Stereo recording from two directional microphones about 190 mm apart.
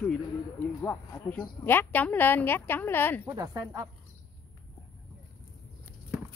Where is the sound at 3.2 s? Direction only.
20° right (ahead or behind).